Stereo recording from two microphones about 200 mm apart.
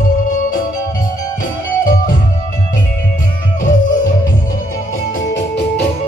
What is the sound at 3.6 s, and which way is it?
Music, 40° left (ahead or behind).